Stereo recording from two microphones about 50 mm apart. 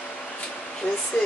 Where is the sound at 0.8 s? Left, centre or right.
Left.